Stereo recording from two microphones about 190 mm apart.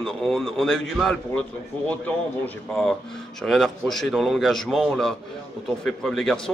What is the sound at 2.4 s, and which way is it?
A man's voice, 5° left (ahead or behind).